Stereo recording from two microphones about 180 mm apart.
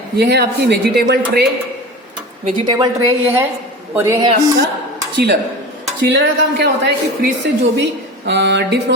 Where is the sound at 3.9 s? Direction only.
15° right (ahead or behind).